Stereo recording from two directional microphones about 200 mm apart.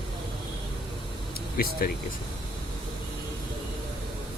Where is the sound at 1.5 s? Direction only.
45° left (ahead or behind).